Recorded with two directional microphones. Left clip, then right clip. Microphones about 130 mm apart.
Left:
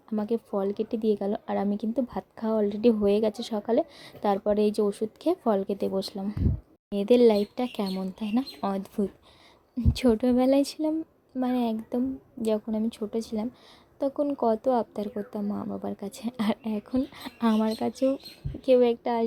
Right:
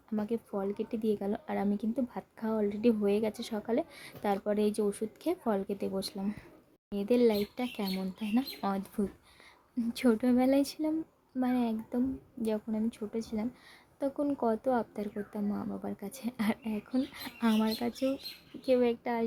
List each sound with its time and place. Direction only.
0.1 s speech: 30° left (ahead or behind)
6.9 s speech: 40° left (ahead or behind)